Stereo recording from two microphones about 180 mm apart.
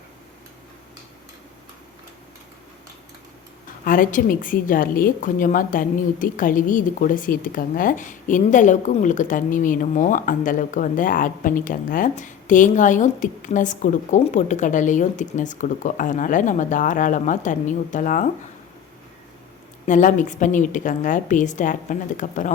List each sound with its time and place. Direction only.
3.8 s a woman's voice: 50° left (ahead or behind)
19.8 s a woman's voice: 45° left (ahead or behind)